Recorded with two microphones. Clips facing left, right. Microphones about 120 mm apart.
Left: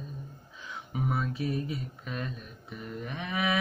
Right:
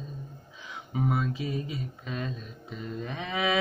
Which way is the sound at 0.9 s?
20° right (ahead or behind).